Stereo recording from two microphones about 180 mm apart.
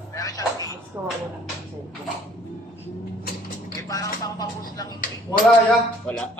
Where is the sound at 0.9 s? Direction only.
15° right (ahead or behind).